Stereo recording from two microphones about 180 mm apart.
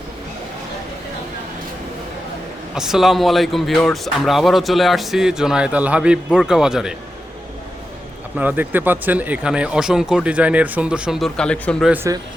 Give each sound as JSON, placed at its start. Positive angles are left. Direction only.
{"t": 2.7, "sound": "speech", "side_deg": 0}
{"t": 8.4, "sound": "speech", "side_deg": -10}
{"t": 11.9, "sound": "speech", "side_deg": -15}